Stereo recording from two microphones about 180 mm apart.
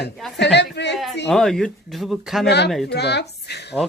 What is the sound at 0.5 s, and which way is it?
Speech, 75° left (ahead or behind).